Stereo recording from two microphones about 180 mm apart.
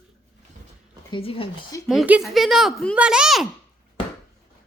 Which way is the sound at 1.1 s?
30° left (ahead or behind).